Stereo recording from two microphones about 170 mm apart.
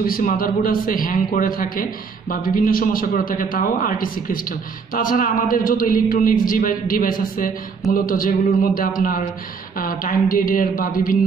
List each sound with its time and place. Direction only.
0.0 s a man's voice: 55° left (ahead or behind)